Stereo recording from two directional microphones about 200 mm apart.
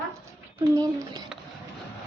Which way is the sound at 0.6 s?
20° right (ahead or behind).